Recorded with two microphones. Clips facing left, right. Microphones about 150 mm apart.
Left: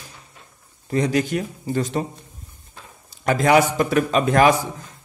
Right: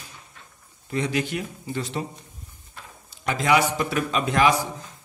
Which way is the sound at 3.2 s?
50° left (ahead or behind).